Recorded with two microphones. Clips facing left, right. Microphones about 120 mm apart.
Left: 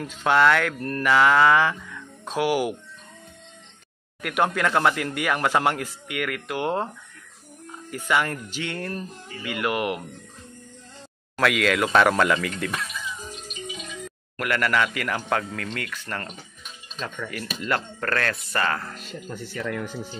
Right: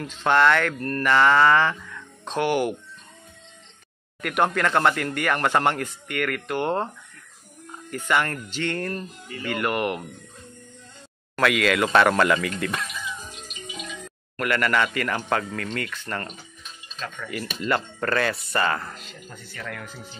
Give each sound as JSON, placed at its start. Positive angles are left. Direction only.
{"t": 0.0, "sound": "speech", "side_deg": 5}
{"t": 4.2, "sound": "speech", "side_deg": 0}
{"t": 7.9, "sound": "speech", "side_deg": 5}
{"t": 11.3, "sound": "speech", "side_deg": 0}
{"t": 14.4, "sound": "speech", "side_deg": 0}